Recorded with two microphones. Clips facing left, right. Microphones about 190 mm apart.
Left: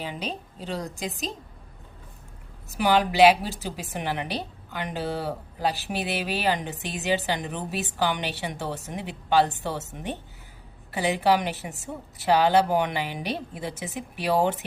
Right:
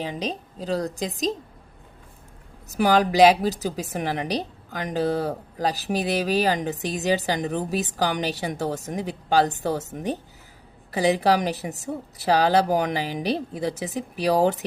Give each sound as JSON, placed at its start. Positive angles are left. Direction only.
{"t": 0.1, "sound": "a woman's voice", "side_deg": -40}
{"t": 2.7, "sound": "a woman's voice", "side_deg": -40}